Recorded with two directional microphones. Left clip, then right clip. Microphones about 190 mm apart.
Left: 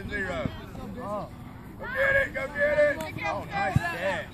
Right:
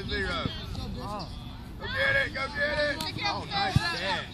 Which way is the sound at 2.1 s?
40° left (ahead or behind).